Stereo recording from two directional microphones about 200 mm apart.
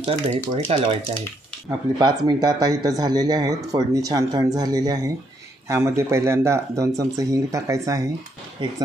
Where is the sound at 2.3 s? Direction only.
20° right (ahead or behind).